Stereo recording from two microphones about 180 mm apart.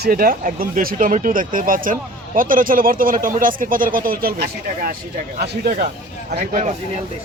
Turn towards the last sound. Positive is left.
turn(degrees=-45)  # may be behind; listen again after turning